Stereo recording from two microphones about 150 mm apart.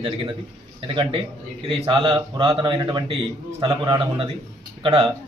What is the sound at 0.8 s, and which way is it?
A man's voice, 35° right (ahead or behind).